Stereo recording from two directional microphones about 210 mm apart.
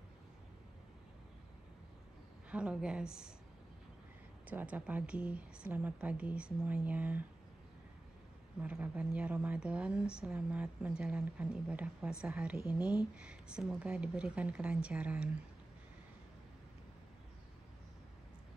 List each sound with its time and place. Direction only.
2.5 s a woman's voice: 5° right (ahead or behind)
4.5 s a woman's voice: 5° right (ahead or behind)
8.6 s a woman's voice: 5° right (ahead or behind)